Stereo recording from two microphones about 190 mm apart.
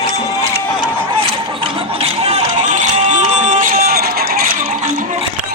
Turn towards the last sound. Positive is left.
turn(degrees=-50)  # may be behind; listen again after turning